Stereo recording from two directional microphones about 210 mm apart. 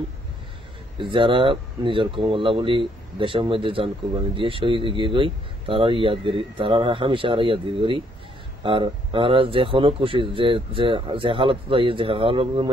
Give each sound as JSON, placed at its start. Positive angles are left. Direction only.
{"t": 0.9, "sound": "speech", "side_deg": -25}